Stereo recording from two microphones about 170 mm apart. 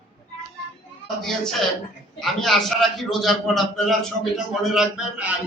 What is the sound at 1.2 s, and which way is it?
A man's voice, centre (ahead or behind).